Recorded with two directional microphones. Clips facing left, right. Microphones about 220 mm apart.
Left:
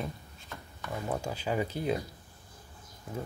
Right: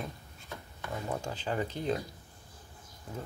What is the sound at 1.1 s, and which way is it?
Speech, 10° left (ahead or behind).